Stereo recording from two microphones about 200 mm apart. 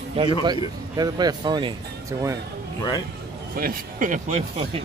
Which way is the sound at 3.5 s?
45° right (ahead or behind).